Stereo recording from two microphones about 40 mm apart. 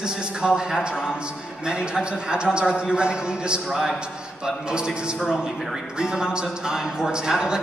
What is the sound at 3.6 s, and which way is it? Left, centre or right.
Speech, centre.